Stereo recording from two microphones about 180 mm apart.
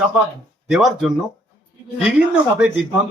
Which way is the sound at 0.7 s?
Centre (ahead or behind).